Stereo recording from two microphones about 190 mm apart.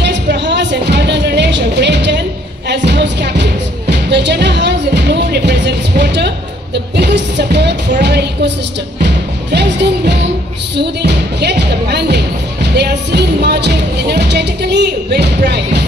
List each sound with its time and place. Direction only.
0.0 s music: 65° right (ahead or behind)
8.0 s a sound: 60° right (ahead or behind)
9.5 s music: 65° right (ahead or behind)